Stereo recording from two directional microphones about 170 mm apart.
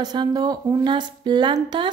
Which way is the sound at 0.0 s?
25° right (ahead or behind).